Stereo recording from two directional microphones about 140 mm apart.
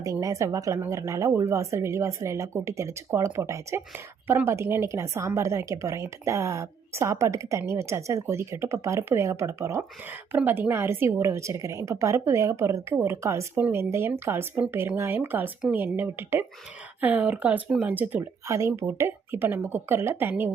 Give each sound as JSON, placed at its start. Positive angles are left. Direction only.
{"t": 0.0, "sound": "a woman's voice", "side_deg": -25}